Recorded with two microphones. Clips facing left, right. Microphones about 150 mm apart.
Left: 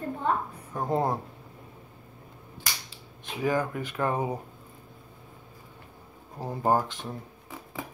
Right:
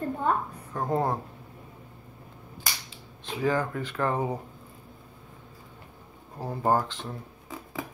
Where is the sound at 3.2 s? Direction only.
15° left (ahead or behind).